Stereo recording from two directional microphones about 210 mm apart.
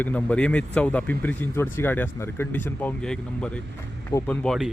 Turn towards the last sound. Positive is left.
turn(degrees=5)  # may be behind; listen again after turning